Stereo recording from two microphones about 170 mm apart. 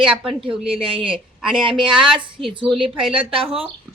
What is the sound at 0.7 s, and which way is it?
A woman's voice, 30° right (ahead or behind).